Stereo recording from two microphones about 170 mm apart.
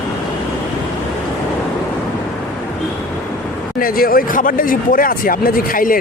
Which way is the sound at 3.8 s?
60° left (ahead or behind).